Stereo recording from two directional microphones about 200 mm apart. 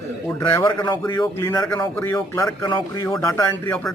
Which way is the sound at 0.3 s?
20° left (ahead or behind).